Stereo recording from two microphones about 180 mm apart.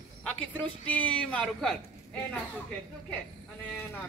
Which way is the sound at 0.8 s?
10° left (ahead or behind).